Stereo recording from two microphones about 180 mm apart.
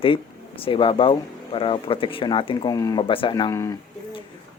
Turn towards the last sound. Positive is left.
turn(degrees=20)  # may be behind; listen again after turning